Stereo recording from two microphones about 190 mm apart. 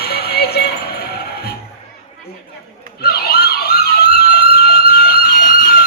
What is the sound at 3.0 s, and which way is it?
Emergency vehicle, 55° left (ahead or behind).